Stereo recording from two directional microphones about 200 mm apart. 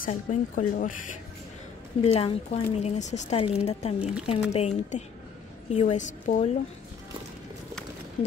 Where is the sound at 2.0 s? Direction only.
30° left (ahead or behind).